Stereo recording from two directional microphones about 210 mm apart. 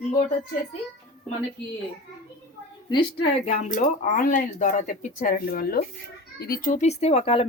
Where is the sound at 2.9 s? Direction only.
25° left (ahead or behind).